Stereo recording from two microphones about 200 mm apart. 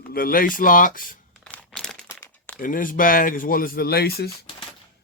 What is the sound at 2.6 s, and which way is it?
Speech, 45° left (ahead or behind).